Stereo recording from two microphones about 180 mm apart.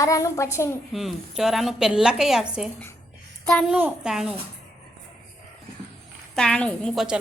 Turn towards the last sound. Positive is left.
turn(degrees=0)  # may be behind; listen again after turning